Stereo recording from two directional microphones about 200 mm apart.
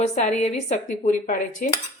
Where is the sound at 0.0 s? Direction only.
35° left (ahead or behind).